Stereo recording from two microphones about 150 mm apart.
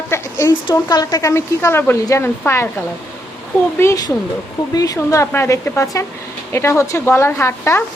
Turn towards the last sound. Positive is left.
turn(degrees=15)  # may be behind; listen again after turning